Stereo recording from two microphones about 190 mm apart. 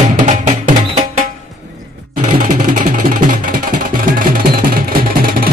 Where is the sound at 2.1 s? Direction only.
45° right (ahead or behind).